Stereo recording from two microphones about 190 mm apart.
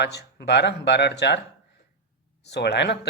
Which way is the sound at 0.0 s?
60° left (ahead or behind).